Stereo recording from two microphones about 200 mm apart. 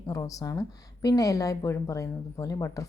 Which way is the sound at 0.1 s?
15° left (ahead or behind).